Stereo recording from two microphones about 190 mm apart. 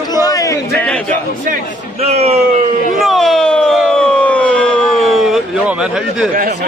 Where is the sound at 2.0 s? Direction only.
35° right (ahead or behind).